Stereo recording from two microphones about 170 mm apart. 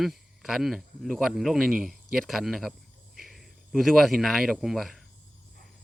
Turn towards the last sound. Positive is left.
turn(degrees=0)  # may be behind; listen again after turning